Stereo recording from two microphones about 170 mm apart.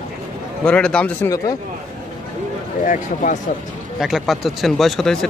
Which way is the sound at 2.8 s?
45° left (ahead or behind).